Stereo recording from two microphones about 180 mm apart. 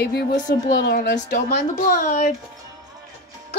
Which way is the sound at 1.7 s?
45° left (ahead or behind).